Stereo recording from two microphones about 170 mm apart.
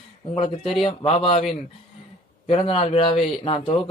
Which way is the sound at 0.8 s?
30° left (ahead or behind).